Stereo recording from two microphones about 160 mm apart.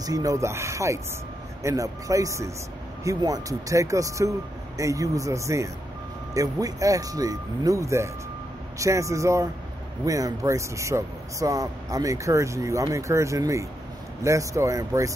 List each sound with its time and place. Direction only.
0.0 s speech: 20° right (ahead or behind)